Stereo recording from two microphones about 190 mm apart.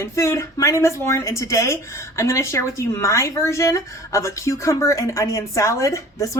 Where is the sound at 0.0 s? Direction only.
15° left (ahead or behind).